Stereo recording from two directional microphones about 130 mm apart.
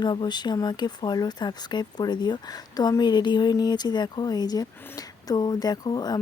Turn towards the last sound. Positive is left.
turn(degrees=30)  # may be behind; listen again after turning